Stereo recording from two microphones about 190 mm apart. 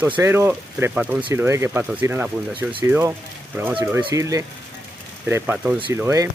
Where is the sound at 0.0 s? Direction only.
10° right (ahead or behind).